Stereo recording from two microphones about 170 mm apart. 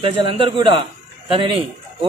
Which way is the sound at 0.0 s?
30° right (ahead or behind).